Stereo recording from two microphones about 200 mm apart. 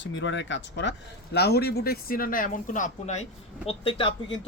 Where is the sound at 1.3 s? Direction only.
55° left (ahead or behind); by 3.2 s 35° left (ahead or behind).